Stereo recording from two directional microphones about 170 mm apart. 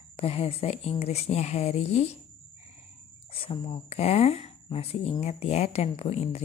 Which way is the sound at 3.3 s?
30° left (ahead or behind).